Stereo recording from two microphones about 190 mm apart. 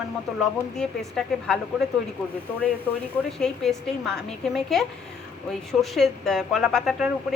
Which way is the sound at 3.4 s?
Centre (ahead or behind).